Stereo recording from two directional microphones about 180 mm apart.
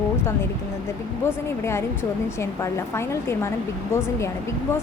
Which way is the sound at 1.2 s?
15° left (ahead or behind).